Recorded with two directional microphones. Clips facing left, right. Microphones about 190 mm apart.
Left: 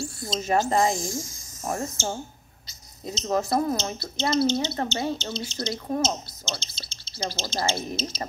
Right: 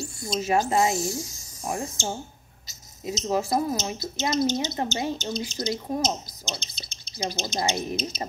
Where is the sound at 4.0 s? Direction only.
15° right (ahead or behind).